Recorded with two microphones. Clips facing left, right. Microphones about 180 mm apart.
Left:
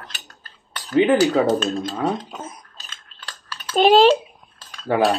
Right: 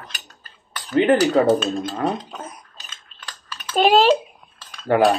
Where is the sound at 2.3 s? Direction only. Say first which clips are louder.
Even; 5° left (ahead or behind).